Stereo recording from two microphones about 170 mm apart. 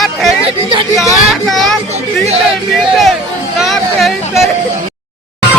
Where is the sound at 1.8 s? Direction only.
40° right (ahead or behind).